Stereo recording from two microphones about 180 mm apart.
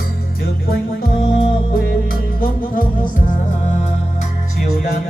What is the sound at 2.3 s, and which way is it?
Music, 50° left (ahead or behind).